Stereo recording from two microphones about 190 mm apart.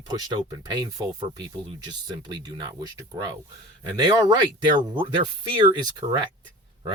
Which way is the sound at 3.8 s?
20° right (ahead or behind).